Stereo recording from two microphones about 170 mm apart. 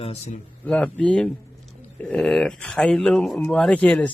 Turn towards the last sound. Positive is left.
turn(degrees=5)  # may be behind; listen again after turning